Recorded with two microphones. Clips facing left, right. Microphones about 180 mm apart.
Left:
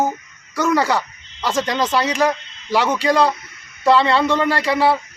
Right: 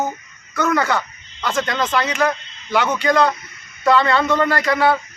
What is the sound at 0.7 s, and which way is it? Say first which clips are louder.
Speech: left 3 dB; 35° left (ahead or behind).